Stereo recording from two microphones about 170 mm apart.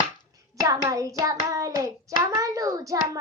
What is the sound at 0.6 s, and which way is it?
Hands, 20° right (ahead or behind).